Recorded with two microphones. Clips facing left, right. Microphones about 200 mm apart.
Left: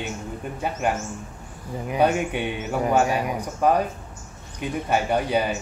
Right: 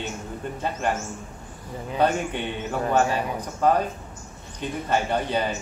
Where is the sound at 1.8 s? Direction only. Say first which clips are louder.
Left 2 dB; 10° left (ahead or behind).